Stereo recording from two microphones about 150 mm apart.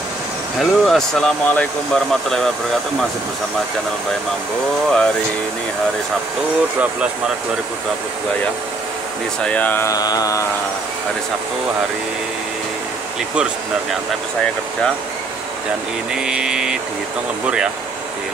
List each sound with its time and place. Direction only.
0.6 s speech: centre (ahead or behind)
4.8 s speech: 5° left (ahead or behind)
9.4 s speech: 10° left (ahead or behind); by 10.4 s 25° left (ahead or behind)
16.2 s speech: 5° right (ahead or behind)